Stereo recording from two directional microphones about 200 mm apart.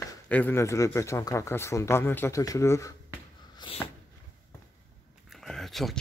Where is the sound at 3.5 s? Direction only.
25° left (ahead or behind).